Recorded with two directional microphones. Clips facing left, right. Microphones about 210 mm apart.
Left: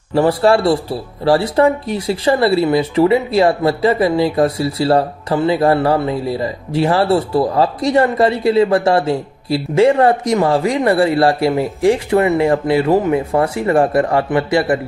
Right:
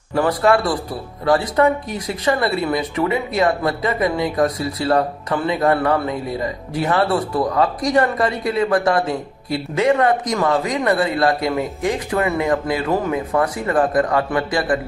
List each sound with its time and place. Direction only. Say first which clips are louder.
0.1 s speech: left 4 dB; 30° left (ahead or behind)